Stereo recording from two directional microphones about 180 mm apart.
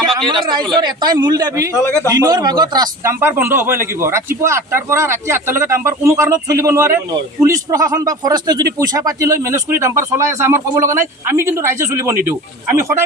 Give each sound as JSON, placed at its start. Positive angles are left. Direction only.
{"t": 0.2, "sound": "speech", "side_deg": -25}
{"t": 1.7, "sound": "a man's voice", "side_deg": 15}
{"t": 2.0, "sound": "speech", "side_deg": -20}